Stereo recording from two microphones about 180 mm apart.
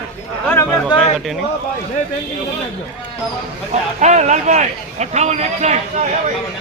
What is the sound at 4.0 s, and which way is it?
A man's voice, 40° right (ahead or behind).